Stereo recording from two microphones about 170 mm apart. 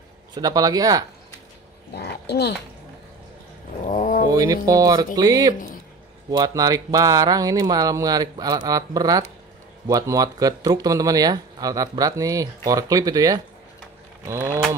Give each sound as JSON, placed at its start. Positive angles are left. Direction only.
{"t": 0.3, "sound": "speech", "side_deg": -20}
{"t": 2.0, "sound": "speech", "side_deg": 75}
{"t": 3.8, "sound": "speech", "side_deg": 50}
{"t": 4.3, "sound": "speech", "side_deg": -20}
{"t": 14.2, "sound": "a sound", "side_deg": -15}